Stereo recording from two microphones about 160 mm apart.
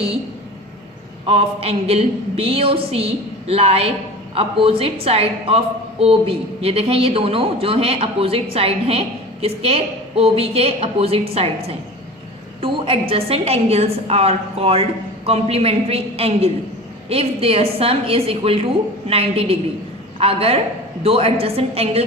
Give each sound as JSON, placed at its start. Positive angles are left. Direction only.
{"t": 1.2, "sound": "a woman's voice", "side_deg": -35}